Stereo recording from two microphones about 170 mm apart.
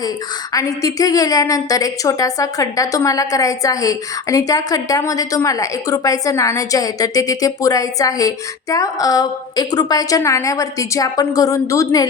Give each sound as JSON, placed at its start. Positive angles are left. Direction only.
{"t": 0.5, "sound": "a woman's voice", "side_deg": 20}